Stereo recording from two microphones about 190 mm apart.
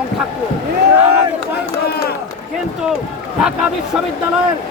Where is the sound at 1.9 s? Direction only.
55° left (ahead or behind).